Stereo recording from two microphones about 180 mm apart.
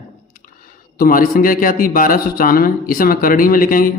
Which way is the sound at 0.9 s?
50° left (ahead or behind).